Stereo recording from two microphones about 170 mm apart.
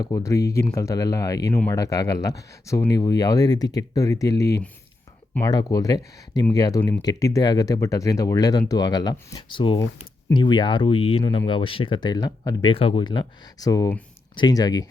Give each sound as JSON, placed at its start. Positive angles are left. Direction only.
{"t": 0.0, "sound": "speech", "side_deg": 20}